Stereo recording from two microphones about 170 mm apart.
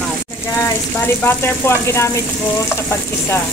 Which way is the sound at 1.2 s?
15° left (ahead or behind).